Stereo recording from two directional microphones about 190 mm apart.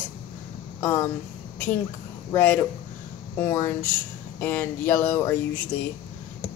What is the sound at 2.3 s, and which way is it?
Speech, 10° left (ahead or behind).